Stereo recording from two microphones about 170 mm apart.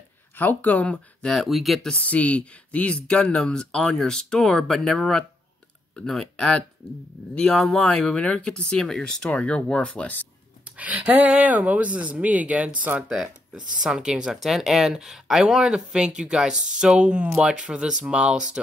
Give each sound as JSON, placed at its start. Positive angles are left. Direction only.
{"t": 0.4, "sound": "speech", "side_deg": 10}
{"t": 10.6, "sound": "speech", "side_deg": -10}
{"t": 13.6, "sound": "speech", "side_deg": -50}
{"t": 13.8, "sound": "speech", "side_deg": -5}